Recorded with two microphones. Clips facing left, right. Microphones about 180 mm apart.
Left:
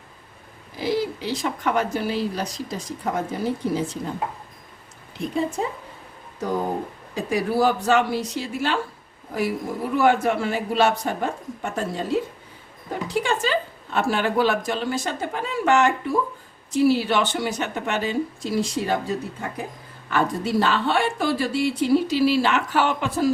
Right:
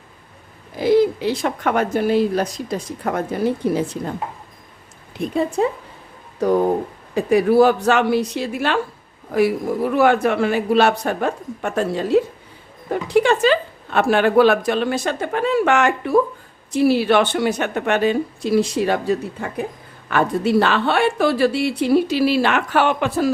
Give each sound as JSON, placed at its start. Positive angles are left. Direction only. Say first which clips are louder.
{"t": 0.8, "sound": "speech", "louder": "right 9 dB", "side_deg": -55}
{"t": 7.1, "sound": "speech", "louder": "right 8 dB", "side_deg": -60}
{"t": 9.9, "sound": "a woman's voice", "louder": "right 2 dB", "side_deg": -70}